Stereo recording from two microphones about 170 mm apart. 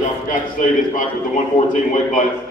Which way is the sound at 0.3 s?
50° left (ahead or behind).